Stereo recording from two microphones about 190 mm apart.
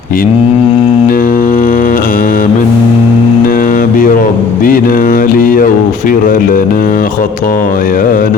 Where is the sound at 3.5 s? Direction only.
45° left (ahead or behind).